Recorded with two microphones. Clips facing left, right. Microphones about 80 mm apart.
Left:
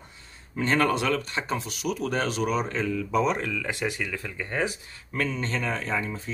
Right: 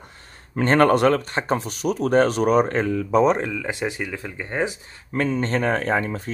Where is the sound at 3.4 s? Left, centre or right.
Right.